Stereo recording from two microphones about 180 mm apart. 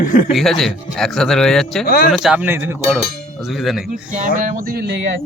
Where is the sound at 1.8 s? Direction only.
55° left (ahead or behind).